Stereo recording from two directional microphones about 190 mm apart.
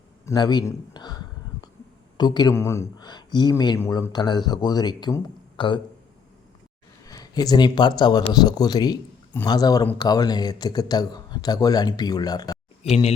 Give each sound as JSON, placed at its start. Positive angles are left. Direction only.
{"t": 0.3, "sound": "a man's voice", "side_deg": 20}
{"t": 7.0, "sound": "speech", "side_deg": 20}
{"t": 12.8, "sound": "speech", "side_deg": 35}